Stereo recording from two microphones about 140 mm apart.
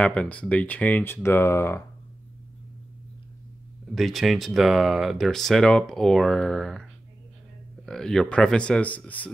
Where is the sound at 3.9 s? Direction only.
Centre (ahead or behind).